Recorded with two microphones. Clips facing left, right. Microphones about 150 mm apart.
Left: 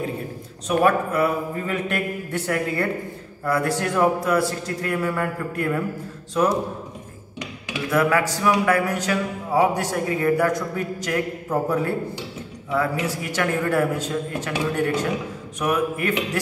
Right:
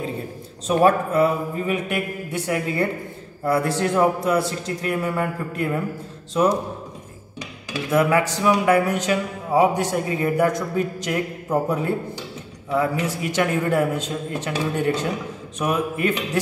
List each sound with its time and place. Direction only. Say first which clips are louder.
0.7 s speech: right 2 dB; 25° right (ahead or behind)
1.9 s speech: even; 15° right (ahead or behind)
3.4 s speech: right 2 dB; 25° right (ahead or behind)
7.9 s speech: right 1 dB; 20° right (ahead or behind)